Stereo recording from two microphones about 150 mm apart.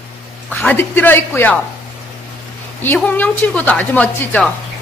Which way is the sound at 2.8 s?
10° left (ahead or behind).